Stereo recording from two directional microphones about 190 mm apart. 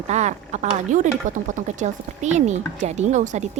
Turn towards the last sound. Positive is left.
turn(degrees=-40)  # may be behind; listen again after turning